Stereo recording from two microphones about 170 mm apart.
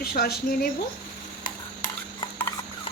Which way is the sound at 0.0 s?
65° left (ahead or behind).